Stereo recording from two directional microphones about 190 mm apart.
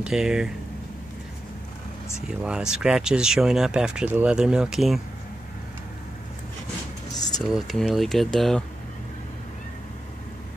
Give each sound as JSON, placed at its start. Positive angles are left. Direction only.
{"t": 0.0, "sound": "speech", "side_deg": -5}
{"t": 2.2, "sound": "speech", "side_deg": -5}
{"t": 7.2, "sound": "a sound", "side_deg": 20}
{"t": 7.4, "sound": "speech", "side_deg": 0}